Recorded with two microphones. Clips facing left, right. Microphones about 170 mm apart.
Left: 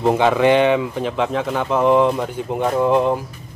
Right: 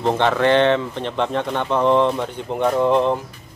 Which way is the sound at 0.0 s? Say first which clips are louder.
Left 3 dB; 10° left (ahead or behind).